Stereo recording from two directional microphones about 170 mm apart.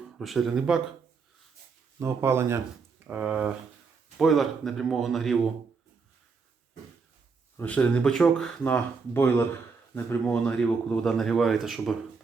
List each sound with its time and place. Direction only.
0.2 s speech: centre (ahead or behind)
2.0 s speech: 15° right (ahead or behind); by 5.4 s centre (ahead or behind)
7.5 s speech: 10° left (ahead or behind)